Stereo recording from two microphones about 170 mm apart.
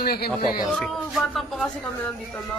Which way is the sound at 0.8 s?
Centre (ahead or behind).